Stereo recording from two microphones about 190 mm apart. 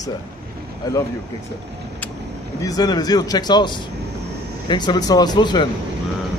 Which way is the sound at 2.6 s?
20° left (ahead or behind).